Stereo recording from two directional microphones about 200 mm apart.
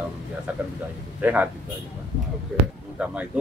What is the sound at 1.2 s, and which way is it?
Speech, 10° right (ahead or behind).